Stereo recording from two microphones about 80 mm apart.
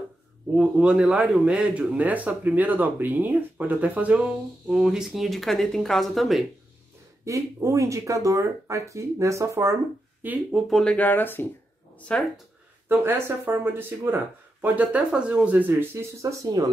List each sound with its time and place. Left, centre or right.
0.6 s speech: centre
7.2 s speech: right
10.2 s speech: right
10.8 s speech: centre
12.1 s speech: centre
12.8 s speech: right